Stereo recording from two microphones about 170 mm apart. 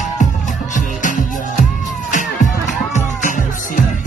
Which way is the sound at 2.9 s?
50° left (ahead or behind).